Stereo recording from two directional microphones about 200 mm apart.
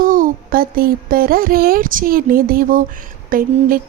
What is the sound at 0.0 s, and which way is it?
Speech, 45° right (ahead or behind).